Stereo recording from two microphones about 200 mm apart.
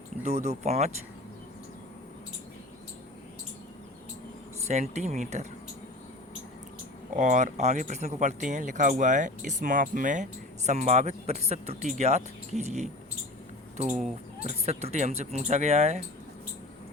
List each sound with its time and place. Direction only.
0.2 s speech: 35° right (ahead or behind)
4.6 s speech: 35° right (ahead or behind)
7.2 s speech: 40° right (ahead or behind)